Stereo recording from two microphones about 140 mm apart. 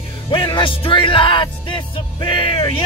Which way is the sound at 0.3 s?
35° left (ahead or behind).